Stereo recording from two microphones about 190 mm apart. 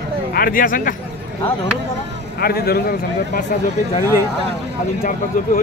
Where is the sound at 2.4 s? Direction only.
55° left (ahead or behind).